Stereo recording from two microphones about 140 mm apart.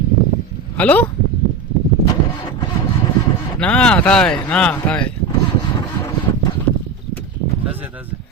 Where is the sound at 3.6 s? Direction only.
5° left (ahead or behind).